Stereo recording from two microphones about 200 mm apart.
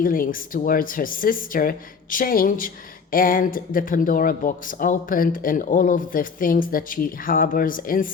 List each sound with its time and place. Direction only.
0.0 s speech: 45° left (ahead or behind)